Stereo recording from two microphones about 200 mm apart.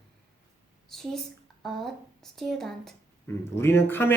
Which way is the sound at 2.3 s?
Centre (ahead or behind).